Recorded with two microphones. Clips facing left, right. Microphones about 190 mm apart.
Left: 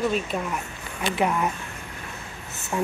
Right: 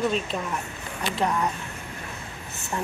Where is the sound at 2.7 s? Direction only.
10° left (ahead or behind).